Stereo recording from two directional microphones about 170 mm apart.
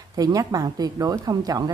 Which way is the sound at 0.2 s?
20° right (ahead or behind).